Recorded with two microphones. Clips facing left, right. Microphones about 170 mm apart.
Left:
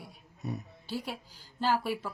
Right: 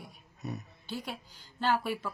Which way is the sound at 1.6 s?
5° left (ahead or behind).